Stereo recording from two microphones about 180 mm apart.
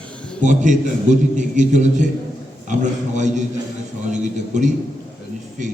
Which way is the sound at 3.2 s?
40° right (ahead or behind).